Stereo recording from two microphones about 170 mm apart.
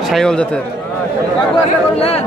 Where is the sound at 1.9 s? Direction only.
35° left (ahead or behind).